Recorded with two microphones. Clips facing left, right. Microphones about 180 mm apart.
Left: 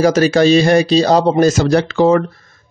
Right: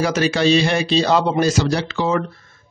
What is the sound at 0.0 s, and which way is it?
Speech, 40° left (ahead or behind).